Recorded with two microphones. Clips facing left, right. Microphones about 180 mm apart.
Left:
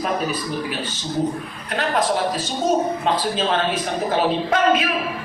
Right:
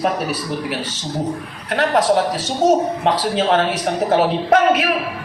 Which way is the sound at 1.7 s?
80° right.